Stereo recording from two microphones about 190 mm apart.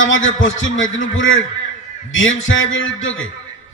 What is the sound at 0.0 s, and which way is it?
A man's voice, 90° left.